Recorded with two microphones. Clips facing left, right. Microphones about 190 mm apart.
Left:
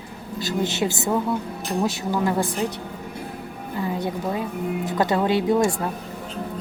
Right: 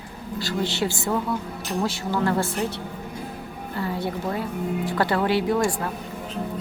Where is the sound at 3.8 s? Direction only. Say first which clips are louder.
Left 1 dB; 20° left (ahead or behind).